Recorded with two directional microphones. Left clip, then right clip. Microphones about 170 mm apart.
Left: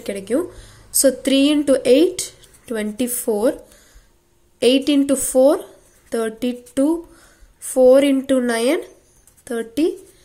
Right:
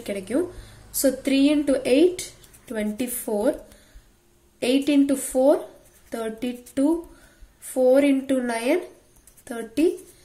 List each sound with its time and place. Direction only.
0.0 s speech: 30° left (ahead or behind)
4.6 s speech: 35° left (ahead or behind)